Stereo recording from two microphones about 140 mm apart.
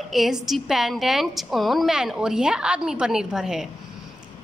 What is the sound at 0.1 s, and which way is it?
A woman's voice, centre (ahead or behind).